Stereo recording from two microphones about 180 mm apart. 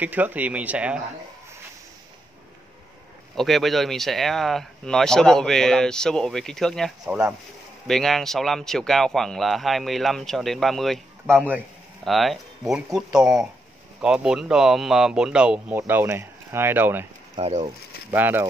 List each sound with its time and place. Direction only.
0.0 s speech: 10° right (ahead or behind)
3.3 s speech: centre (ahead or behind)
12.0 s speech: centre (ahead or behind)
17.4 s speech: 35° right (ahead or behind)
18.1 s speech: 10° right (ahead or behind)